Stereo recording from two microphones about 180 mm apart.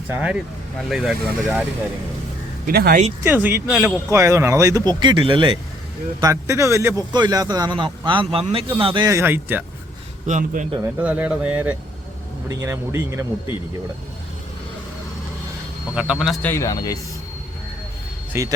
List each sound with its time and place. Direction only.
0.1 s speech: 5° right (ahead or behind)
2.6 s speech: 55° right (ahead or behind)
3.2 s speech: 10° right (ahead or behind); by 5.5 s 30° right (ahead or behind)
6.1 s a man's voice: 15° right (ahead or behind)
9.0 s speech: 15° right (ahead or behind)
10.2 s speech: 45° right (ahead or behind)
10.8 s speech: 10° right (ahead or behind)
16.2 s speech: centre (ahead or behind)
16.5 s speech: 15° left (ahead or behind)
18.3 s speech: 15° right (ahead or behind)